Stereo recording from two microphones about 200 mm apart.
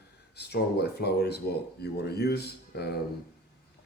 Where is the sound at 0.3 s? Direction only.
55° left (ahead or behind).